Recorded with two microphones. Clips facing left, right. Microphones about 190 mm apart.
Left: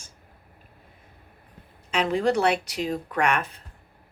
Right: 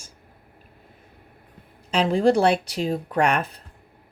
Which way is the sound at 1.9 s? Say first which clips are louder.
Right 4 dB; 30° right (ahead or behind).